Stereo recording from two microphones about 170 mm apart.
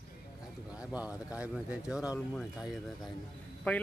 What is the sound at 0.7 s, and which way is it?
Speech, 5° right (ahead or behind).